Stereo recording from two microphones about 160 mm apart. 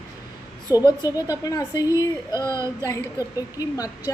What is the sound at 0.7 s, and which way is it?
Speech, 15° right (ahead or behind).